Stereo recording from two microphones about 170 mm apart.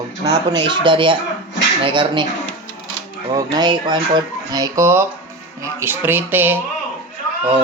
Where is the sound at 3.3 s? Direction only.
20° right (ahead or behind).